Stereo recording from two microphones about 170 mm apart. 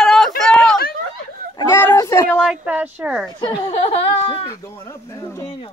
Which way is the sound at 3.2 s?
20° left (ahead or behind).